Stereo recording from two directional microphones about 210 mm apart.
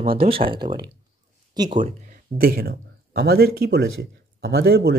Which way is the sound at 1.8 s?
45° right (ahead or behind).